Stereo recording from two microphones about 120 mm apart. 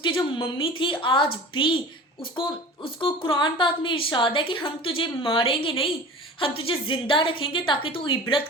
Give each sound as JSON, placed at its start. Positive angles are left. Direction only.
{"t": 0.0, "sound": "speech", "side_deg": 45}